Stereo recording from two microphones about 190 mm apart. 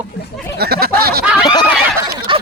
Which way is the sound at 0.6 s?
55° right (ahead or behind).